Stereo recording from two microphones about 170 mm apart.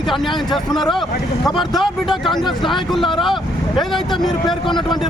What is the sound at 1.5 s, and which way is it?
Speech, centre (ahead or behind).